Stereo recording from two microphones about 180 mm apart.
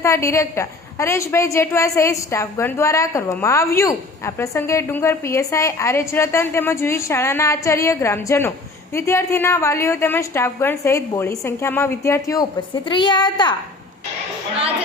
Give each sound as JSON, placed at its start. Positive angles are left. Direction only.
{"t": 0.0, "sound": "a woman's voice", "side_deg": 15}